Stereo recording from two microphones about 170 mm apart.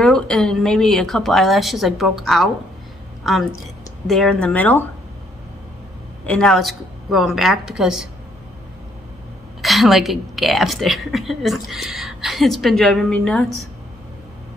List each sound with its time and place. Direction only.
0.0 s a woman's voice: 5° left (ahead or behind)
4.1 s a woman's voice: 5° left (ahead or behind)
6.2 s a woman's voice: 5° left (ahead or behind)
9.6 s a woman's voice: centre (ahead or behind)